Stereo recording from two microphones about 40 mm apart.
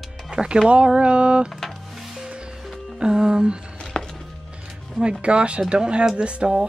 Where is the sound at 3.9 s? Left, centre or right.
Left.